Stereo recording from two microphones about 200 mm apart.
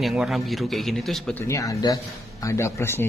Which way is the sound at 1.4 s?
15° left (ahead or behind).